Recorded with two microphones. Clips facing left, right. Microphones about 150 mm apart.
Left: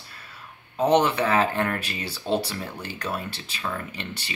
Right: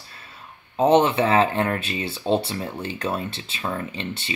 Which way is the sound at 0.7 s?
25° right (ahead or behind).